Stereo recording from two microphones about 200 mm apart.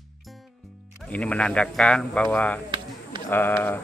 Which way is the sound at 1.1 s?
5° left (ahead or behind).